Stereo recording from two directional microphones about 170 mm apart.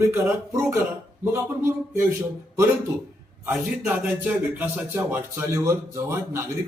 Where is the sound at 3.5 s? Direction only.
15° right (ahead or behind).